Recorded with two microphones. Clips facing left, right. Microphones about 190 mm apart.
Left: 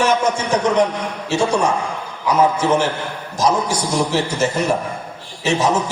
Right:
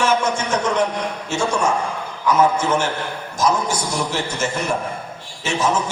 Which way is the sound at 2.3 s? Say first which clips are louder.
Left 2 dB; 35° left (ahead or behind).